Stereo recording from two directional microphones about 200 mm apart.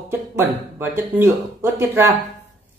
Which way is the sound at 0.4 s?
10° right (ahead or behind).